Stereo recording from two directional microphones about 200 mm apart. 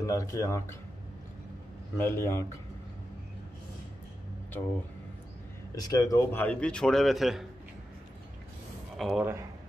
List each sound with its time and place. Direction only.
0.0 s speech: 15° left (ahead or behind)
2.0 s speech: 10° left (ahead or behind)
5.8 s a man's voice: 20° left (ahead or behind); by 7.4 s centre (ahead or behind)
8.9 s speech: centre (ahead or behind)
9.2 s a man's voice: 15° right (ahead or behind)